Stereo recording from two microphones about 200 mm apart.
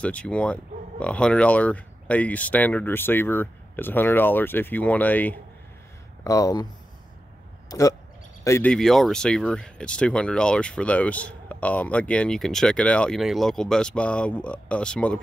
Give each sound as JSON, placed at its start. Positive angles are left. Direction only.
{"t": 0.0, "sound": "speech", "side_deg": 5}
{"t": 7.7, "sound": "speech", "side_deg": 20}
{"t": 8.7, "sound": "speech", "side_deg": 0}